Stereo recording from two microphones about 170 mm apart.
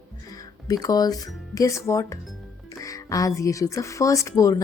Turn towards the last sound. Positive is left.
turn(degrees=20)  # may be behind; listen again after turning